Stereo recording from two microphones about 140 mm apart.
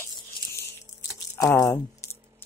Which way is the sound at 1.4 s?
25° left (ahead or behind).